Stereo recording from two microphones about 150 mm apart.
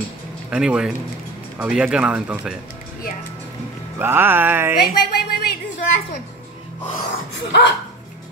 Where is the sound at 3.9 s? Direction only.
15° right (ahead or behind).